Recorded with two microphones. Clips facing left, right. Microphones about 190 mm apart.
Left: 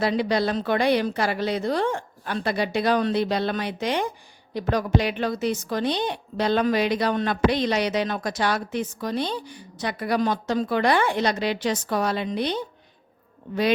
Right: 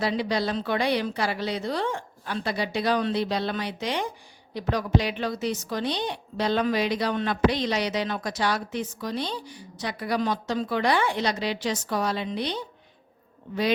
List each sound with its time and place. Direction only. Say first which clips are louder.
0.0 s a woman's voice: left 3 dB; 55° left (ahead or behind)